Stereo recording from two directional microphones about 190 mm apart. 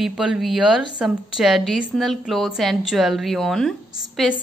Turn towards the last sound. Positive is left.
turn(degrees=0)  # may be behind; listen again after turning